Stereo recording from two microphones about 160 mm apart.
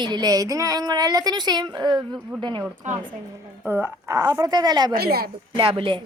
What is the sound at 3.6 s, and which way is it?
Speech, 15° right (ahead or behind).